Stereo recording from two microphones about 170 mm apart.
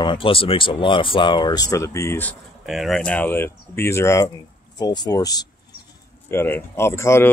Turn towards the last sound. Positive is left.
turn(degrees=15)  # may be behind; listen again after turning